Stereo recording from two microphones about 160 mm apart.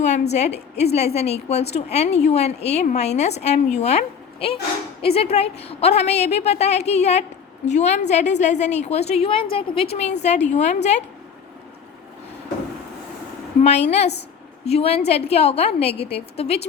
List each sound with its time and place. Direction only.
0.0 s a woman's voice: 45° left (ahead or behind)
13.6 s a woman's voice: 45° left (ahead or behind)